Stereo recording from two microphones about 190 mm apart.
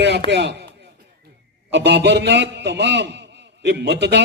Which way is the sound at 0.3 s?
65° right (ahead or behind).